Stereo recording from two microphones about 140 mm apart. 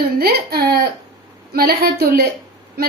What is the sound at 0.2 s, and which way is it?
A woman's voice, 90° right.